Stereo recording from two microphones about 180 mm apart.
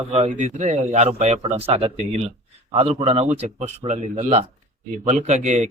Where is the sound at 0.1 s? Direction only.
40° right (ahead or behind).